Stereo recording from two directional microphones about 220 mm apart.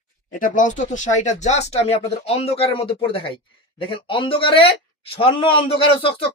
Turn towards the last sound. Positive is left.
turn(degrees=25)  # may be behind; listen again after turning